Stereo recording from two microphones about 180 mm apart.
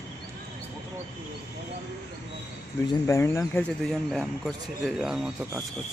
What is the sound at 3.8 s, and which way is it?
Speech, centre (ahead or behind).